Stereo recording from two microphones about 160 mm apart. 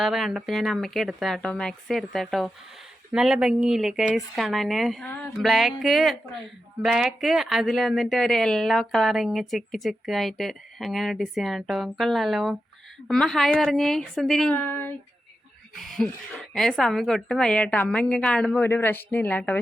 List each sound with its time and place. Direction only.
0.0 s speech: centre (ahead or behind)
15.7 s speech: centre (ahead or behind)